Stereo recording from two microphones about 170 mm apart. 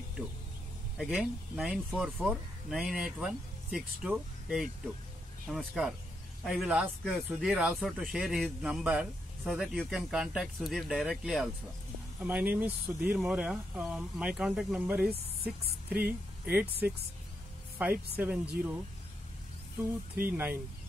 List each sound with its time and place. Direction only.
0.9 s a woman's voice: centre (ahead or behind)
19.8 s speech: 10° right (ahead or behind)